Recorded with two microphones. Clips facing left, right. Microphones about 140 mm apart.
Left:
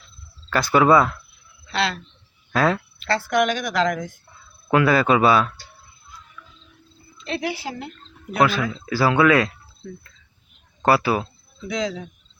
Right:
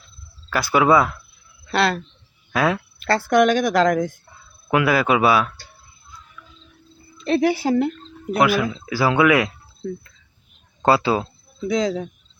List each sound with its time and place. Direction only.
0.5 s speech: 10° right (ahead or behind)
1.6 s speech: 50° right (ahead or behind)
2.5 s speech: 5° right (ahead or behind)
3.0 s a woman's voice: 45° right (ahead or behind)
4.7 s speech: 10° right (ahead or behind)
7.3 s a woman's voice: 45° right (ahead or behind)
8.4 s speech: 10° right (ahead or behind)
10.8 s speech: 20° right (ahead or behind)
11.7 s speech: 40° right (ahead or behind)